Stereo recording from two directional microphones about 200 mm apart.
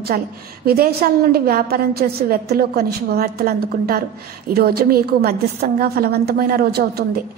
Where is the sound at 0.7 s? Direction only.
50° right (ahead or behind).